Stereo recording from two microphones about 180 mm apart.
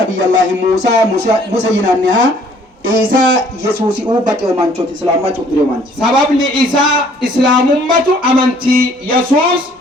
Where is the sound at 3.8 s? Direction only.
25° right (ahead or behind).